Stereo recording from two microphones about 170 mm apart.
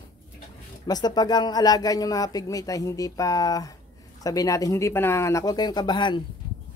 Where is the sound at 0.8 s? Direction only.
25° left (ahead or behind).